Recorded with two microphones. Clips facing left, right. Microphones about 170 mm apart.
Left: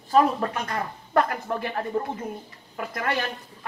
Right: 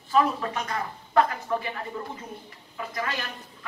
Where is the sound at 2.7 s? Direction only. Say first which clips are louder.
Left 4 dB; 55° left (ahead or behind).